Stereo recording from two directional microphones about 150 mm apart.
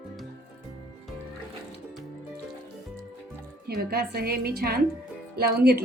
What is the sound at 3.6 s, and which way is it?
A woman's voice, 90° right.